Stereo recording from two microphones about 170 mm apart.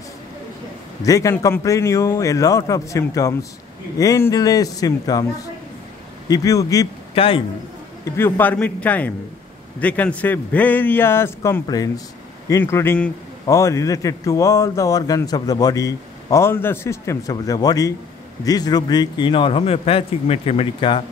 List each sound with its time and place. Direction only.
1.0 s a man's voice: 20° left (ahead or behind)
6.2 s a man's voice: 20° left (ahead or behind)
7.2 s a man's voice: 30° left (ahead or behind)
8.0 s a man's voice: 10° left (ahead or behind); by 21.0 s 35° left (ahead or behind)